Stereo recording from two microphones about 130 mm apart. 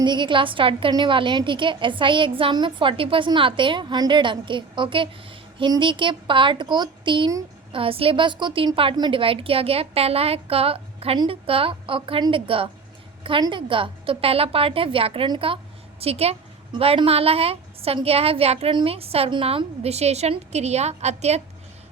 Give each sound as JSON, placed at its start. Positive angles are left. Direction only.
{"t": 0.0, "sound": "a woman's voice", "side_deg": -35}